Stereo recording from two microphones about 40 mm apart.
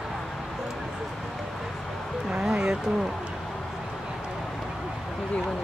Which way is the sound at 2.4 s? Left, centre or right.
Centre.